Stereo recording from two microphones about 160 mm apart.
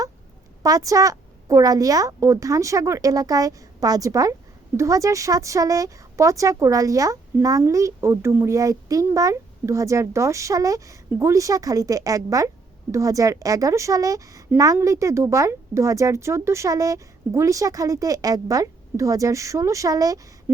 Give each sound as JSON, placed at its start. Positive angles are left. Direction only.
{"t": 0.6, "sound": "speech", "side_deg": -20}